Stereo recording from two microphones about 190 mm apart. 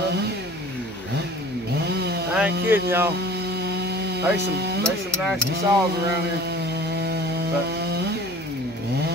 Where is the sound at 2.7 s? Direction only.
10° right (ahead or behind).